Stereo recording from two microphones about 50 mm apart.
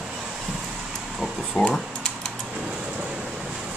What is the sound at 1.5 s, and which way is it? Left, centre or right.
Speech, left.